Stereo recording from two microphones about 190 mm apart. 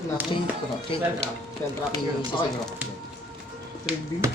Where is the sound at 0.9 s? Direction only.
30° left (ahead or behind).